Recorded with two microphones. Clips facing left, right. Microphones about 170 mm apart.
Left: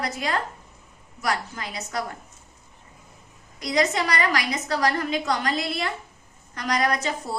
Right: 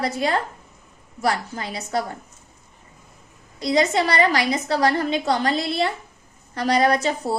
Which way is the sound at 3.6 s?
30° right (ahead or behind).